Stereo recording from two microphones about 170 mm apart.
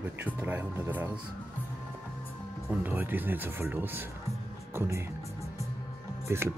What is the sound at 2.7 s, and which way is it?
Speech, 10° right (ahead or behind).